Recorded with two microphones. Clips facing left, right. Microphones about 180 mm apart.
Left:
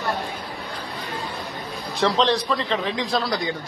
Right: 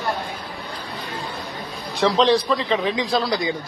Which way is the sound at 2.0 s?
Centre (ahead or behind).